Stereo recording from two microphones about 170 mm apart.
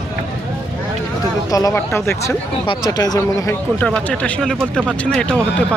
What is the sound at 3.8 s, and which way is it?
Speech, 5° left (ahead or behind).